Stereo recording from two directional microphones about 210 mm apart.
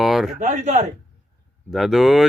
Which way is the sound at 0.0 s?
Centre (ahead or behind).